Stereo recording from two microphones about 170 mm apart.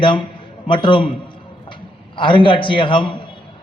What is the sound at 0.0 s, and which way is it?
A man's voice, 30° left (ahead or behind).